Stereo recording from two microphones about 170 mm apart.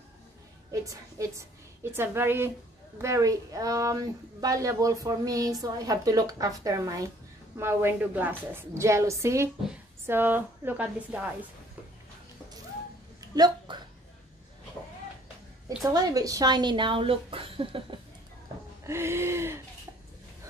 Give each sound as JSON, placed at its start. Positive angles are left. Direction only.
{"t": 0.7, "sound": "a woman's voice", "side_deg": -20}
{"t": 13.2, "sound": "a sound", "side_deg": -20}
{"t": 15.8, "sound": "speech", "side_deg": -20}
{"t": 18.9, "sound": "a woman's voice", "side_deg": -15}